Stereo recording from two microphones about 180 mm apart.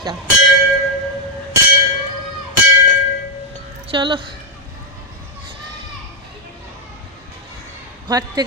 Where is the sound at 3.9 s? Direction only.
30° right (ahead or behind).